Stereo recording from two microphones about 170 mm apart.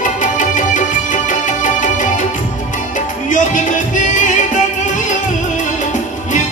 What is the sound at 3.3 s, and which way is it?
Music, 50° left (ahead or behind).